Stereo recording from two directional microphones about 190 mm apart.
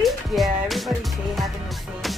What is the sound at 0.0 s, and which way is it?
Music, centre (ahead or behind).